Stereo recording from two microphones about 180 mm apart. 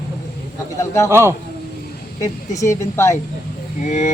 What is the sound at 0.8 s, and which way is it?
Speech, 15° left (ahead or behind).